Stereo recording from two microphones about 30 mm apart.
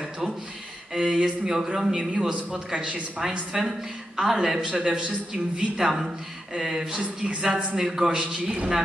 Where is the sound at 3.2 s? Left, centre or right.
Right.